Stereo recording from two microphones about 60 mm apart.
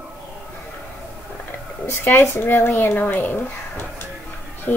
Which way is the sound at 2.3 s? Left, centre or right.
Left.